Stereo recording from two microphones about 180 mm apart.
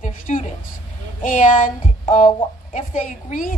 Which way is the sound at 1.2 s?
45° left (ahead or behind).